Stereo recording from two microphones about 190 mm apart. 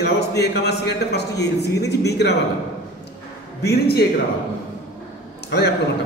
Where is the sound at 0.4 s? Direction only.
60° left (ahead or behind).